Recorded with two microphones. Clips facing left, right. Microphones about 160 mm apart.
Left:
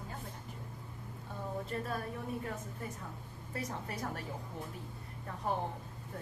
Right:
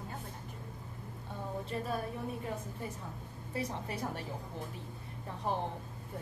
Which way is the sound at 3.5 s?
25° right (ahead or behind).